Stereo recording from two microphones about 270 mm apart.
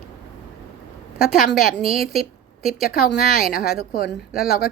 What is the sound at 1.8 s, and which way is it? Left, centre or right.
Speech, left.